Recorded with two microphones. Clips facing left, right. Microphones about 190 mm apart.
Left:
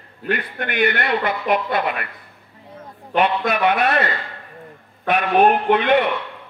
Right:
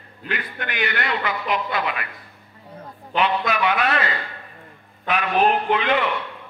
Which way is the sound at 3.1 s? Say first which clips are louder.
Left 3 dB; 50° left (ahead or behind).